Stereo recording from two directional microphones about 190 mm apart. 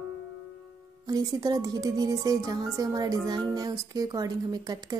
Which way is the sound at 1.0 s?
20° right (ahead or behind).